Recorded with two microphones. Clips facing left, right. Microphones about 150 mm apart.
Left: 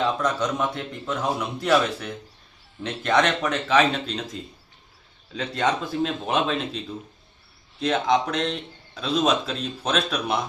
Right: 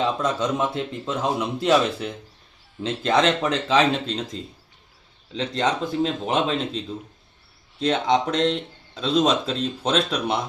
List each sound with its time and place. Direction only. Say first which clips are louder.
0.0 s speech: right 1 dB; 25° right (ahead or behind)
5.4 s speech: right 1 dB; 25° right (ahead or behind)
7.9 s speech: right 1 dB; 25° right (ahead or behind)